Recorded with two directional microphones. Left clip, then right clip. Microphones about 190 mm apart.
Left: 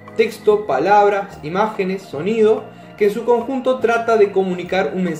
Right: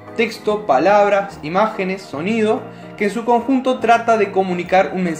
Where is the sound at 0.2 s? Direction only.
30° right (ahead or behind).